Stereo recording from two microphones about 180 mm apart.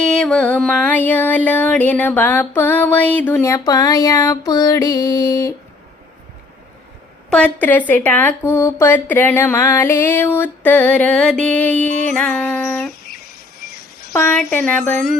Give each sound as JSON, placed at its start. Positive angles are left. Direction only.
{"t": 0.0, "sound": "speech", "side_deg": 5}
{"t": 7.3, "sound": "speech", "side_deg": 5}
{"t": 14.2, "sound": "speech", "side_deg": 10}